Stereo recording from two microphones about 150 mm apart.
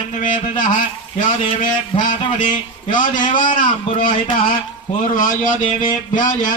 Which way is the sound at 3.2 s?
60° left (ahead or behind).